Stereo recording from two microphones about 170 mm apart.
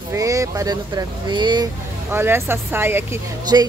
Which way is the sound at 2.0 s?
15° right (ahead or behind).